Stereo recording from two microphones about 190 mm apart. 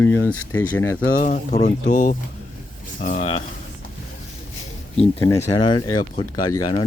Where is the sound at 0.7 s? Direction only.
90° left.